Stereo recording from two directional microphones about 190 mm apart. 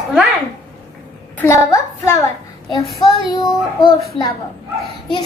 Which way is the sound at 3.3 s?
20° left (ahead or behind).